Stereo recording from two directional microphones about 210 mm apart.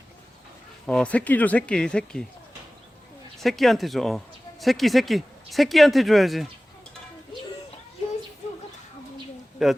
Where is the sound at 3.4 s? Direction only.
Centre (ahead or behind).